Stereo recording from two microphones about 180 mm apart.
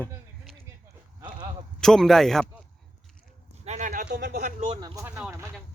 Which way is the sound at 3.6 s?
40° right (ahead or behind).